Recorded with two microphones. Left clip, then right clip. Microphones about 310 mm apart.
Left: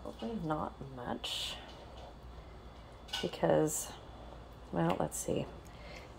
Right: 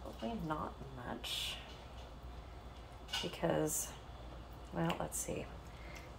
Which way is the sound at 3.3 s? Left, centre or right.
Left.